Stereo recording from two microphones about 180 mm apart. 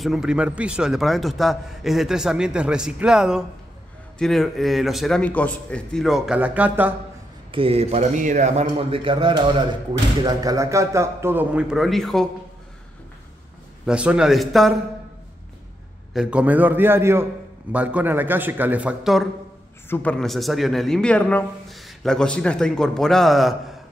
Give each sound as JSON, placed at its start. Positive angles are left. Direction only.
{"t": 0.0, "sound": "a man's voice", "side_deg": 0}
{"t": 7.5, "sound": "a man's voice", "side_deg": -30}
{"t": 13.8, "sound": "a man's voice", "side_deg": -5}
{"t": 16.1, "sound": "a man's voice", "side_deg": -5}
{"t": 19.9, "sound": "a man's voice", "side_deg": 5}